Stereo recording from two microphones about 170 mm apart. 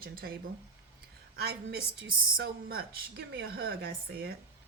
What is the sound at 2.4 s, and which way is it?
A woman's voice, 65° right (ahead or behind).